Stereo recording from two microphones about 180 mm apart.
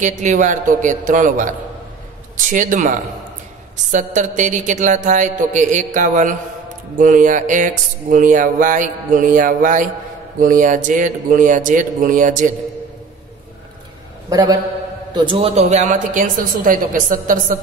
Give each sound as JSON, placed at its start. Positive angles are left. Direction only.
{"t": 0.2, "sound": "speech", "side_deg": -40}
{"t": 2.5, "sound": "speech", "side_deg": -45}
{"t": 14.3, "sound": "a man's voice", "side_deg": -20}
{"t": 15.1, "sound": "speech", "side_deg": -30}